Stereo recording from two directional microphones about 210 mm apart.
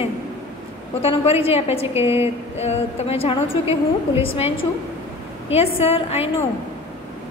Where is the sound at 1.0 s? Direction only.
30° left (ahead or behind).